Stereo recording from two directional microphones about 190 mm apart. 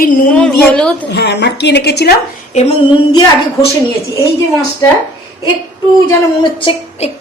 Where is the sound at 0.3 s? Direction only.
5° left (ahead or behind).